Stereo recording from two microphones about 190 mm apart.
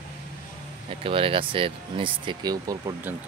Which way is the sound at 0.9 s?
30° right (ahead or behind).